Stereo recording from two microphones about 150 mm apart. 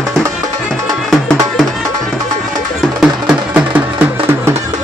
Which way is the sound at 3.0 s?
5° right (ahead or behind).